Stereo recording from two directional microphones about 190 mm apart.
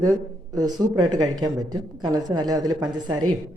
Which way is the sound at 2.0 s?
20° right (ahead or behind).